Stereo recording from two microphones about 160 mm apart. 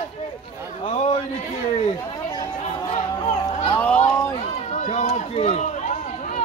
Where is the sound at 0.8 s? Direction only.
35° left (ahead or behind).